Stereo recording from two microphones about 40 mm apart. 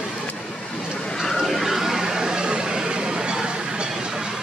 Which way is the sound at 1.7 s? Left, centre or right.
Centre.